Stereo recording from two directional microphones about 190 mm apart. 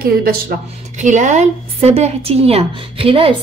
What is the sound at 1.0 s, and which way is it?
A woman's voice, 40° right (ahead or behind).